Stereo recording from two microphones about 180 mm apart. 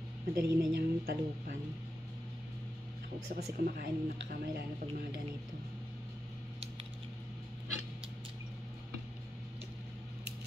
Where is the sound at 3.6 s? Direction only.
55° right (ahead or behind).